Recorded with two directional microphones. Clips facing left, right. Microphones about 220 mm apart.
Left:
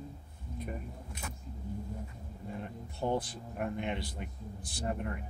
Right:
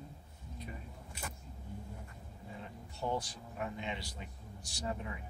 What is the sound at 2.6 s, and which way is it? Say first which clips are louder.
Speech: left 4 dB; 55° left (ahead or behind).